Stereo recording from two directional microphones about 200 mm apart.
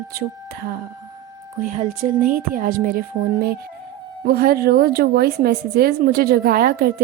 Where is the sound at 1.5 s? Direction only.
40° right (ahead or behind).